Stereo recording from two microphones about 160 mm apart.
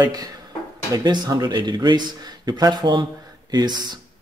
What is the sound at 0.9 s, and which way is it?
Speech, 25° right (ahead or behind).